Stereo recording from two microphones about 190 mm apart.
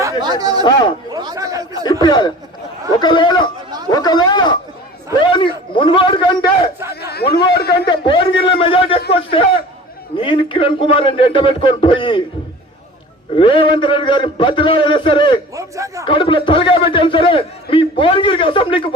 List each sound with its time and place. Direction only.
0.0 s a sound: 20° right (ahead or behind)
1.8 s a man's voice: 20° left (ahead or behind)
3.8 s a sound: 20° left (ahead or behind)
7.0 s chatter: 55° left (ahead or behind)
7.5 s a man's voice: 55° left (ahead or behind)
7.9 s a man's voice: 25° left (ahead or behind)
13.3 s a man's voice: 25° left (ahead or behind)
15.5 s a man's voice: 15° right (ahead or behind)
16.0 s a man's voice: 25° left (ahead or behind)